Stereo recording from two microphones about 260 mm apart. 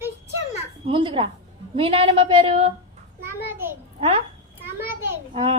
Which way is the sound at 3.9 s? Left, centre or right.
Right.